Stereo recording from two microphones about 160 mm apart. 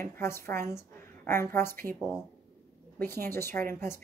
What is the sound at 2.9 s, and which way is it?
A woman's voice, 15° left (ahead or behind).